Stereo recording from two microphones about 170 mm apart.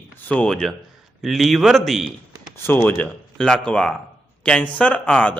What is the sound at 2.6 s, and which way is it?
A man's voice, 10° left (ahead or behind).